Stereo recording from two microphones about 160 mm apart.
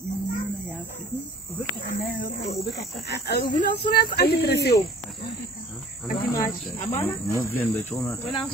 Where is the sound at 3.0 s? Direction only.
90° left.